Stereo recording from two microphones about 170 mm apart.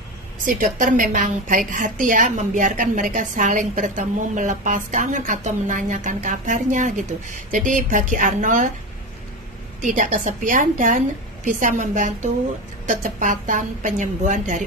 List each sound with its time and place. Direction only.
0.7 s a woman's voice: 50° right (ahead or behind)
9.8 s a woman's voice: 45° right (ahead or behind)